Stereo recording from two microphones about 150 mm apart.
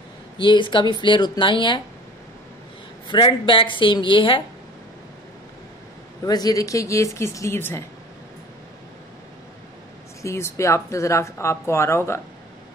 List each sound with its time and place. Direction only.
0.4 s speech: 30° left (ahead or behind)
3.1 s speech: 30° left (ahead or behind)
6.2 s speech: 25° left (ahead or behind)
10.2 s speech: 20° left (ahead or behind)